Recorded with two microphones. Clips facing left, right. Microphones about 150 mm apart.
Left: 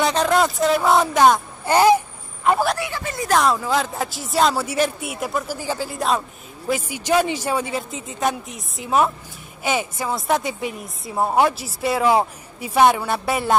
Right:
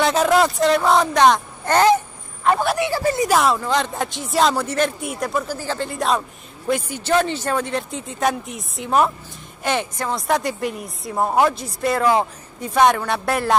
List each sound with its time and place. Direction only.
0.0 s speech: 5° right (ahead or behind)
2.4 s a sound: 5° left (ahead or behind)
2.9 s speech: 35° right (ahead or behind)
3.3 s a woman's voice: centre (ahead or behind)